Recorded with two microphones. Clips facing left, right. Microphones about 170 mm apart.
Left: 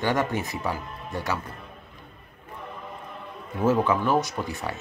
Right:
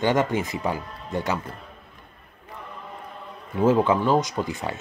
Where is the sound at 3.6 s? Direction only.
15° right (ahead or behind).